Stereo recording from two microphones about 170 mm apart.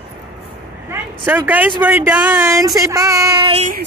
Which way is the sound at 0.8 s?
10° right (ahead or behind).